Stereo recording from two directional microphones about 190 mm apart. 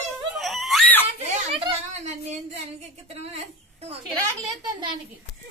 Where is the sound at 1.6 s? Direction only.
35° right (ahead or behind).